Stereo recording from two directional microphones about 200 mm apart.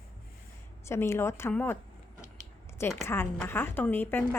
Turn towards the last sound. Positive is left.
turn(degrees=10)  # may be behind; listen again after turning